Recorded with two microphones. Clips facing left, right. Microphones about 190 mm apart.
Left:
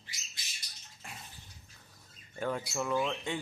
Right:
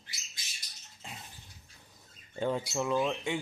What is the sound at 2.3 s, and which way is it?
Speech, 20° right (ahead or behind).